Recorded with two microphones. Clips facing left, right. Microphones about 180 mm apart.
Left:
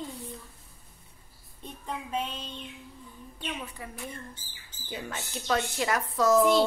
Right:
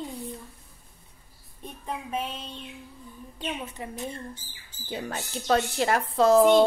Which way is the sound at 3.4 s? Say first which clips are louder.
Right 4 dB; 25° right (ahead or behind).